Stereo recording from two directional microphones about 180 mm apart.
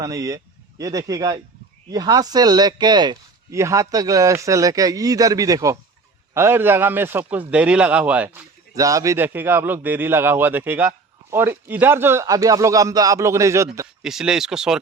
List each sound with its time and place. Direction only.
0.0 s a man's voice: 20° right (ahead or behind)
14.0 s speech: 5° right (ahead or behind)